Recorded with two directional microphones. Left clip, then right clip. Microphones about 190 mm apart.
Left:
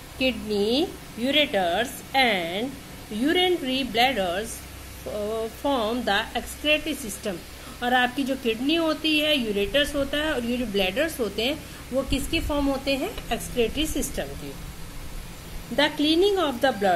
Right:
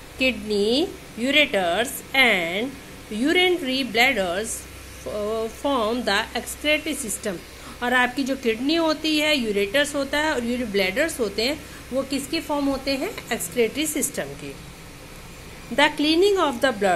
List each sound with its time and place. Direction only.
0.2 s a woman's voice: 20° right (ahead or behind)
5.6 s a woman's voice: 15° right (ahead or behind)
15.7 s a woman's voice: 15° right (ahead or behind)